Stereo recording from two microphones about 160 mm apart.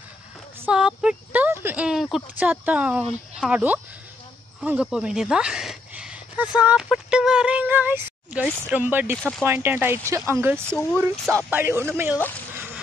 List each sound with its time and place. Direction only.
0.6 s speech: 5° right (ahead or behind)
10.7 s speech: 10° left (ahead or behind)
11.3 s speech: 15° right (ahead or behind)